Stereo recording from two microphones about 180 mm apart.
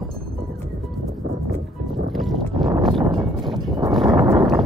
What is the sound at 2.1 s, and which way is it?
Boat, centre (ahead or behind).